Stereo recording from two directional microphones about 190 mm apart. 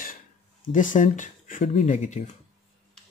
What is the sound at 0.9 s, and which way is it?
Speech, 45° left (ahead or behind).